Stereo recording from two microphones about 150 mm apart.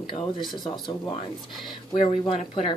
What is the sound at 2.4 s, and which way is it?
Speech, 40° left (ahead or behind).